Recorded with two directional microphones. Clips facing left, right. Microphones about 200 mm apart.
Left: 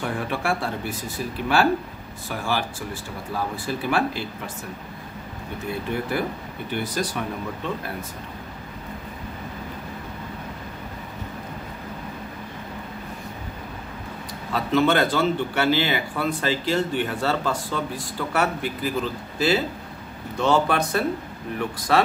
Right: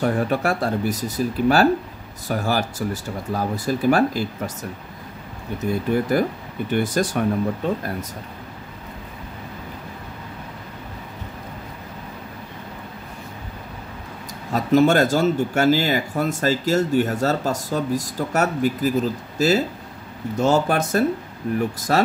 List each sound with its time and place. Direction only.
0.0 s speech: 40° right (ahead or behind)
5.7 s speech: 40° right (ahead or behind)
14.5 s speech: 45° right (ahead or behind)